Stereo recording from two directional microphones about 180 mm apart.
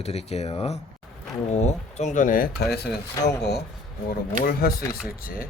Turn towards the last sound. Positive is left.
turn(degrees=55)  # may be behind; listen again after turning